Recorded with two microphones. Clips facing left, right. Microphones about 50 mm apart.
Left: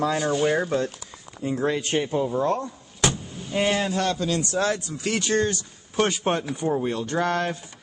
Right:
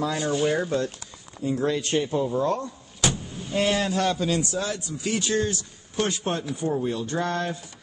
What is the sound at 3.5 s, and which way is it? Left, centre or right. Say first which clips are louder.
Speech: even; centre.